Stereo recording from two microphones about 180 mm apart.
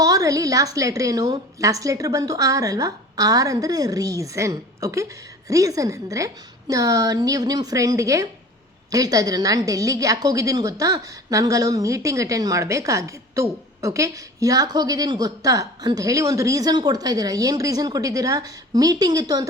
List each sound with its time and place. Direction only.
0.0 s a woman's voice: 20° right (ahead or behind)